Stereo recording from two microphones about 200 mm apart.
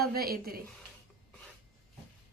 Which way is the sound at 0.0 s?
50° right (ahead or behind).